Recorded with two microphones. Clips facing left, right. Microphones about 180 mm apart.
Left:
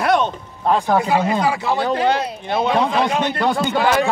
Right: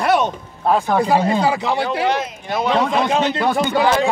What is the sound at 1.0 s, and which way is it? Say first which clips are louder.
Speech: right 2 dB; 35° right (ahead or behind).